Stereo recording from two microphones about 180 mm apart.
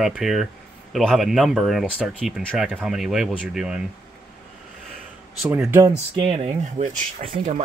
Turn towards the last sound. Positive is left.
turn(degrees=-40)  # may be behind; listen again after turning